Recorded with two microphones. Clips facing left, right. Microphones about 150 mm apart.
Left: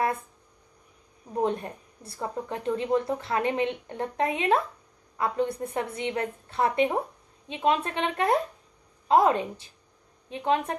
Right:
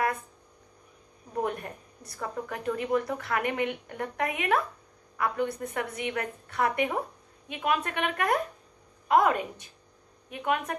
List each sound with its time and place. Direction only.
1.3 s a woman's voice: 25° left (ahead or behind)